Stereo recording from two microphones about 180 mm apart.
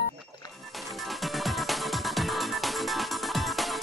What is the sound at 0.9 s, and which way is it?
Music, centre (ahead or behind).